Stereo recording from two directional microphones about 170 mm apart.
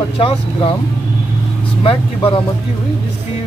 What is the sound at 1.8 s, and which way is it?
Speech, 30° left (ahead or behind).